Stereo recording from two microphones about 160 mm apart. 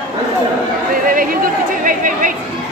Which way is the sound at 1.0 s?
60° right (ahead or behind).